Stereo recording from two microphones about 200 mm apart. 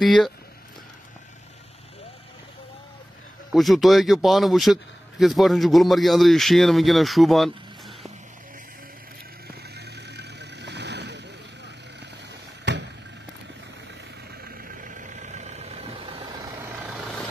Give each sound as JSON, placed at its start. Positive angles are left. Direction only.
{"t": 0.0, "sound": "speech", "side_deg": 0}
{"t": 3.5, "sound": "speech", "side_deg": 0}
{"t": 9.5, "sound": "vehicle", "side_deg": -55}
{"t": 14.4, "sound": "vehicle", "side_deg": -45}
{"t": 16.4, "sound": "vehicle", "side_deg": -10}